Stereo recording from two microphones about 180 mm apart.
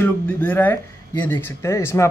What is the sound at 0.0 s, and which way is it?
Speech, 10° left (ahead or behind).